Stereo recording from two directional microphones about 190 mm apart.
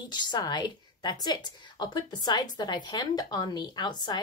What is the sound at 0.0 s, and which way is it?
A woman's voice, 20° left (ahead or behind).